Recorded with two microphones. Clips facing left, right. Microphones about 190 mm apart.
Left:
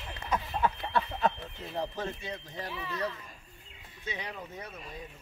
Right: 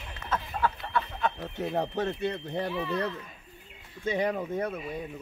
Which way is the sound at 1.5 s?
65° right (ahead or behind).